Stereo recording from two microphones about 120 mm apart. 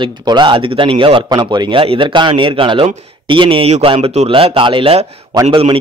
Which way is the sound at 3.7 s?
55° right (ahead or behind).